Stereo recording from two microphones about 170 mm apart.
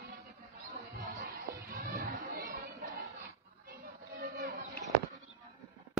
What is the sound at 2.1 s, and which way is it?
Chatter, 50° right (ahead or behind).